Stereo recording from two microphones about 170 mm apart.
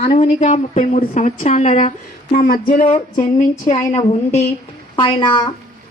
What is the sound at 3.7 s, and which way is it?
Speech, 40° left (ahead or behind).